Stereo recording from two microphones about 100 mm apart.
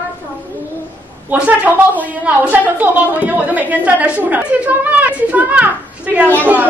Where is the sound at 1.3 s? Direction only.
15° right (ahead or behind).